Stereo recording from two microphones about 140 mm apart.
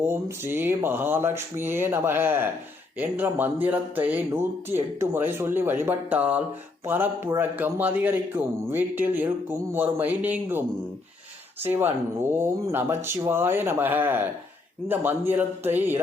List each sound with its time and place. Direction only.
0.1 s a man's voice: 15° right (ahead or behind)
11.6 s a man's voice: 15° right (ahead or behind)